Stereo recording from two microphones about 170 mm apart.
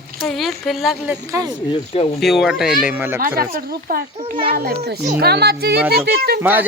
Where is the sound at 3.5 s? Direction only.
60° right (ahead or behind).